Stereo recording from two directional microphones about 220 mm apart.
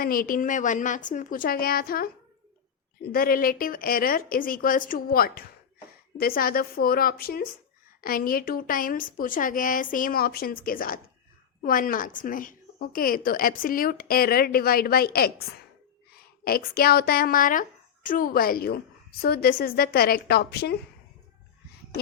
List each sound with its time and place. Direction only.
0.0 s a woman's voice: 40° left (ahead or behind)
3.1 s a woman's voice: 40° left (ahead or behind)